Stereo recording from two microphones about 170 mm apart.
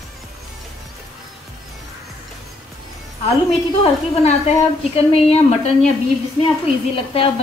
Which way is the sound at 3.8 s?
35° left (ahead or behind).